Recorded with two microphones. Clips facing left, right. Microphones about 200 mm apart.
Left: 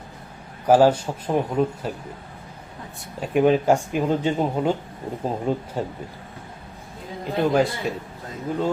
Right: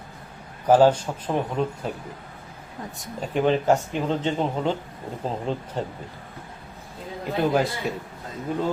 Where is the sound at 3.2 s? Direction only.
10° left (ahead or behind).